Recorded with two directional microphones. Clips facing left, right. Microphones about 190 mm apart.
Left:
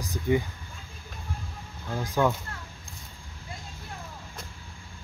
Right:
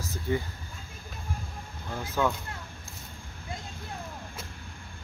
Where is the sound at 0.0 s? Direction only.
15° left (ahead or behind).